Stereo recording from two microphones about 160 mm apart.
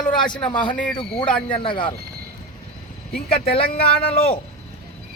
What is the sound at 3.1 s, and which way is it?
Speech, 70° left (ahead or behind).